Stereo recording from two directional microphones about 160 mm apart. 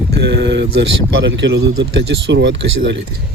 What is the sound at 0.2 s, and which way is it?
Speech, 90° right.